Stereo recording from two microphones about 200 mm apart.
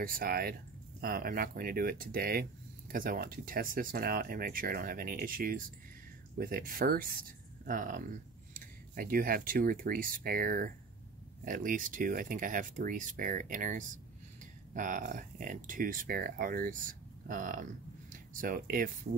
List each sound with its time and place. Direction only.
0.0 s speech: 45° right (ahead or behind)